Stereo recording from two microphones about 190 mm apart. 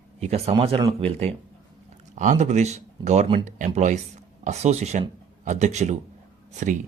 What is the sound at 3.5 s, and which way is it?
Speech, 40° right (ahead or behind).